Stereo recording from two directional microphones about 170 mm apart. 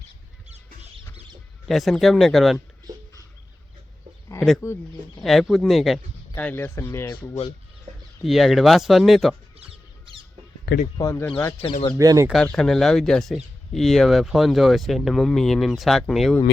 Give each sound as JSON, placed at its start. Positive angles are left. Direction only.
{"t": 1.6, "sound": "speech", "side_deg": 0}
{"t": 4.4, "sound": "speech", "side_deg": 0}
{"t": 4.6, "sound": "speech", "side_deg": 15}
{"t": 5.2, "sound": "speech", "side_deg": 0}
{"t": 6.3, "sound": "speech", "side_deg": 10}
{"t": 8.2, "sound": "speech", "side_deg": 0}
{"t": 9.6, "sound": "rodents", "side_deg": -30}
{"t": 10.9, "sound": "speech", "side_deg": 20}
{"t": 11.9, "sound": "speech", "side_deg": -20}
{"t": 12.3, "sound": "speech", "side_deg": 5}